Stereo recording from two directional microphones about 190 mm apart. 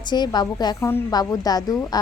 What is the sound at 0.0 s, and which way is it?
A woman's voice, 20° left (ahead or behind).